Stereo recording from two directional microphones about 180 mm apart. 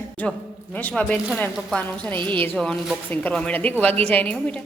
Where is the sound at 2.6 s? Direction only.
Centre (ahead or behind).